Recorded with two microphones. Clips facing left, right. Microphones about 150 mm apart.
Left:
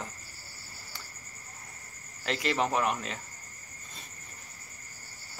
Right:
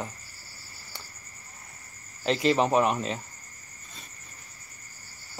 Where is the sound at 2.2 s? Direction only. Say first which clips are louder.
Right 6 dB; 25° right (ahead or behind).